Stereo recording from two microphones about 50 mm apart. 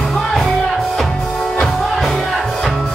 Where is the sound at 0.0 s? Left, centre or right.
Centre.